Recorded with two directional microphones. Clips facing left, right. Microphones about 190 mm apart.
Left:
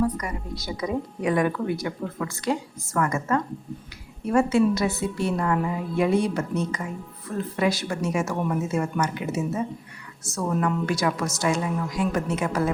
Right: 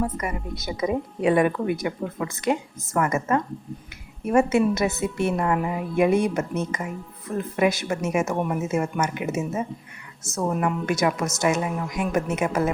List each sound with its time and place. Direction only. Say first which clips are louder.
0.2 s speech: right 2 dB; 20° right (ahead or behind)